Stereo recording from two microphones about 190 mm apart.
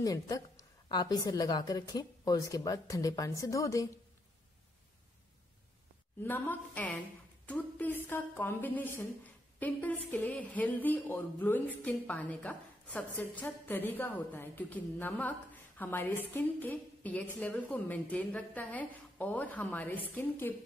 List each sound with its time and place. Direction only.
0.0 s a woman's voice: 20° left (ahead or behind)
6.2 s a woman's voice: 10° left (ahead or behind)